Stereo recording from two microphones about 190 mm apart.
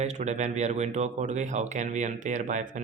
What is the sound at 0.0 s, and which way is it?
Speech, 35° right (ahead or behind).